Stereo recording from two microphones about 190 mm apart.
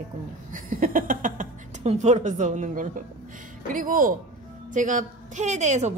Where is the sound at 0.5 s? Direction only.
50° right (ahead or behind).